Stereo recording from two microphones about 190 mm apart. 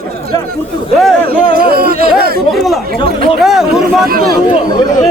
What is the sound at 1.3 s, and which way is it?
Speech, 55° right (ahead or behind).